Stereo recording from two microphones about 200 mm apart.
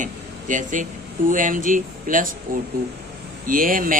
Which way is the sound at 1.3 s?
40° right (ahead or behind).